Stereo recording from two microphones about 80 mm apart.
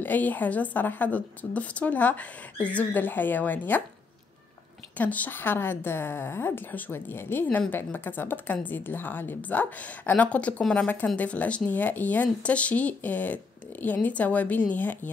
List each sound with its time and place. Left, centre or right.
0.0 s a woman's voice: left
4.9 s a woman's voice: centre